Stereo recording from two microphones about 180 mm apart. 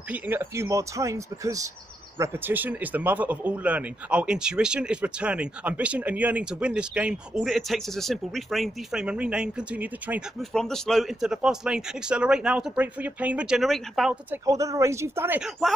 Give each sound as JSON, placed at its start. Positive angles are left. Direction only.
{"t": 0.1, "sound": "speech", "side_deg": -10}
{"t": 10.5, "sound": "speech", "side_deg": 5}
{"t": 14.3, "sound": "speech", "side_deg": -20}